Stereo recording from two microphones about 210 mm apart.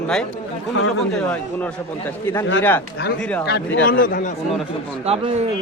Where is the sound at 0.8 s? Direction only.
65° left (ahead or behind).